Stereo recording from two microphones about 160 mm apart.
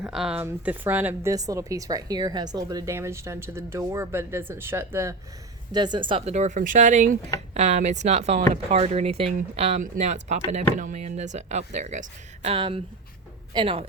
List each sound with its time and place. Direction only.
0.0 s a woman's voice: 5° right (ahead or behind)
5.7 s a man's voice: 25° right (ahead or behind)